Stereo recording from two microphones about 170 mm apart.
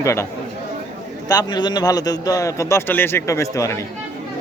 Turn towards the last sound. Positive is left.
turn(degrees=20)  # may be behind; listen again after turning